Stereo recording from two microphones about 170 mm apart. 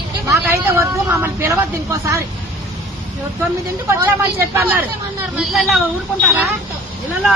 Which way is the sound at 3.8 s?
15° right (ahead or behind).